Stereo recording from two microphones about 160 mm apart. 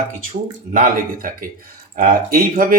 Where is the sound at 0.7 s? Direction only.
60° right (ahead or behind).